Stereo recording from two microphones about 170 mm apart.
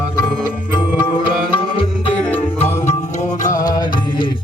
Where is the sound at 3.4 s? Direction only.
50° left (ahead or behind).